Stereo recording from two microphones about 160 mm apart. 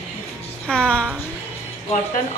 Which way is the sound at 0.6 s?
5° left (ahead or behind).